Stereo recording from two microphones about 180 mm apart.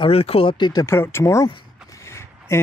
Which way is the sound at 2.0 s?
15° left (ahead or behind).